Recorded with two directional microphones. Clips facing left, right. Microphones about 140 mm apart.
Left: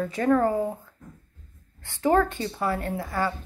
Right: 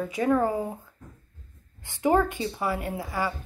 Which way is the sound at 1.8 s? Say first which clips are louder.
Left 1 dB; 15° right (ahead or behind).